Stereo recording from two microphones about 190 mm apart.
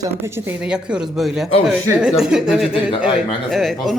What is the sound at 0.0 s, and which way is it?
Speech, 15° right (ahead or behind).